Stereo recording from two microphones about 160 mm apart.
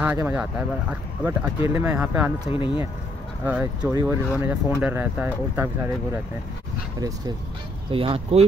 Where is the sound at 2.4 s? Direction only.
35° left (ahead or behind).